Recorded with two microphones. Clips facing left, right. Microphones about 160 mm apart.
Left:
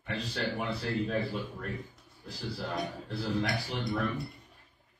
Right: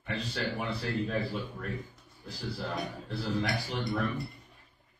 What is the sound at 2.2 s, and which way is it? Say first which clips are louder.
Speech: even; centre (ahead or behind).